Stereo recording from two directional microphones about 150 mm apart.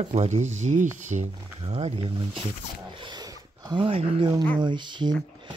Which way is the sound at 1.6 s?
40° right (ahead or behind).